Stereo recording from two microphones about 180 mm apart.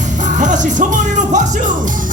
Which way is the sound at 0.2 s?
45° right (ahead or behind).